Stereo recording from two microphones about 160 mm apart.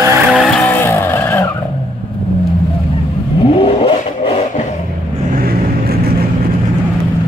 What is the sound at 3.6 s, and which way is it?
Vehicle, 30° left (ahead or behind).